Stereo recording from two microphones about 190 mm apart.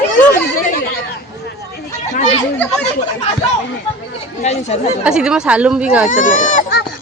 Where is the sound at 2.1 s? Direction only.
40° left (ahead or behind).